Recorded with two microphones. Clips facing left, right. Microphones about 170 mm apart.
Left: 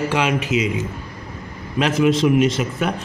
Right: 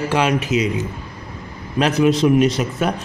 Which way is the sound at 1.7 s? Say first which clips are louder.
Right 1 dB; 40° right (ahead or behind).